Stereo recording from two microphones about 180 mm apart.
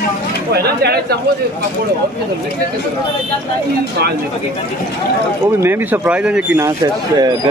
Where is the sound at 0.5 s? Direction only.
60° right (ahead or behind).